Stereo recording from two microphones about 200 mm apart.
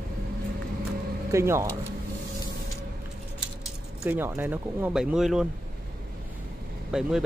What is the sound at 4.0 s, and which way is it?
Speech, 10° right (ahead or behind).